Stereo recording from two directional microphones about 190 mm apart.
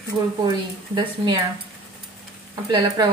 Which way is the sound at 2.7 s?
25° right (ahead or behind).